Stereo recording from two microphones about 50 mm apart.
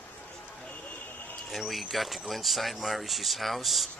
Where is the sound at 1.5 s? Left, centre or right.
Centre.